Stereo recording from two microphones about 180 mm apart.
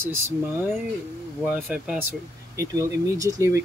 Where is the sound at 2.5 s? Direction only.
20° right (ahead or behind).